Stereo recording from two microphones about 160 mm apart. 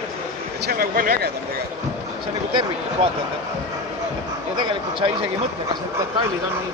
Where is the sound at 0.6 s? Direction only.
65° right (ahead or behind).